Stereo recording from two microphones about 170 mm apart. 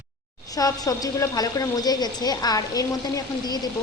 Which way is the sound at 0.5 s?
20° left (ahead or behind).